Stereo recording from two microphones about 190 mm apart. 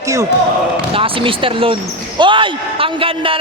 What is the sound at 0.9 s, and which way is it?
Speech, 30° right (ahead or behind).